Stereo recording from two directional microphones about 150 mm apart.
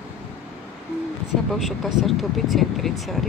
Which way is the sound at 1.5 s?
Centre (ahead or behind).